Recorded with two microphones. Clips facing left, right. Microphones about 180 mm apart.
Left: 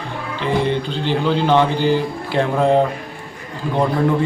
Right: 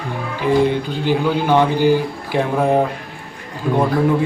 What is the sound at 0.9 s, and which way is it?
Speech, 10° right (ahead or behind).